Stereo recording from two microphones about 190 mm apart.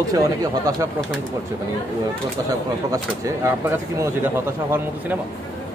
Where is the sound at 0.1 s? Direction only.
20° right (ahead or behind).